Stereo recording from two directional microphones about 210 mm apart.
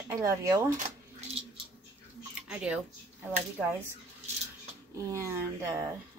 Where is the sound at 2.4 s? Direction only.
5° right (ahead or behind).